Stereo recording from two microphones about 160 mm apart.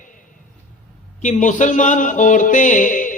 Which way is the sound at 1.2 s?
50° left (ahead or behind).